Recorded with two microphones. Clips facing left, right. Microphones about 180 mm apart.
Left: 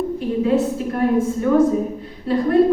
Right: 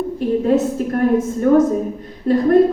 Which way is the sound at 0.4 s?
45° right (ahead or behind).